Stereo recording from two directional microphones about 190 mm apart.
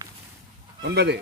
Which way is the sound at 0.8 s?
65° right (ahead or behind).